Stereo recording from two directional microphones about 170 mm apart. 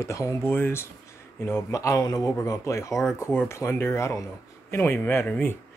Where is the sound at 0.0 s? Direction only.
15° left (ahead or behind).